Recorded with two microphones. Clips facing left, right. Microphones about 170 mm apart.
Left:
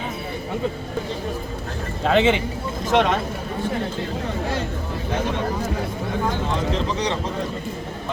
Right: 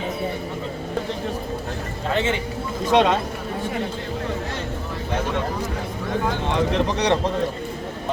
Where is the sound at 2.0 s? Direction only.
85° left.